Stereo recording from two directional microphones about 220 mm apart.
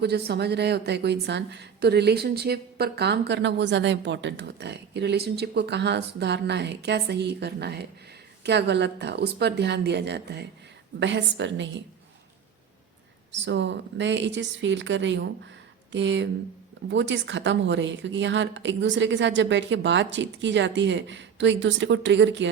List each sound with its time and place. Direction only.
0.0 s a woman's voice: 50° right (ahead or behind)
13.3 s a woman's voice: 55° right (ahead or behind)